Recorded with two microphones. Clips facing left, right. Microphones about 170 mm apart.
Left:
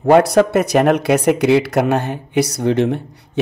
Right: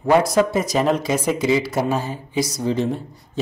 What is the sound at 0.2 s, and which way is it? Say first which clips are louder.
Speech: left 5 dB; 65° left (ahead or behind).